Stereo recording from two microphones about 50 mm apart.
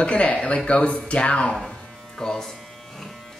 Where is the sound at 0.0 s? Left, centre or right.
Left.